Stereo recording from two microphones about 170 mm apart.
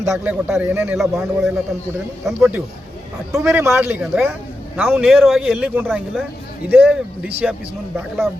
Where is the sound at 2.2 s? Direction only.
5° right (ahead or behind).